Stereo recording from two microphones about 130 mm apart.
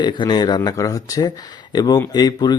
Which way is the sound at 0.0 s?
35° left (ahead or behind).